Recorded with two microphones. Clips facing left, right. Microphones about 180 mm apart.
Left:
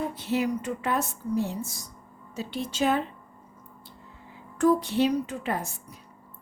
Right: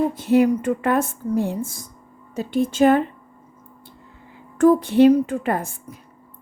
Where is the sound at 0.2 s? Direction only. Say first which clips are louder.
Right 11 dB; 50° right (ahead or behind).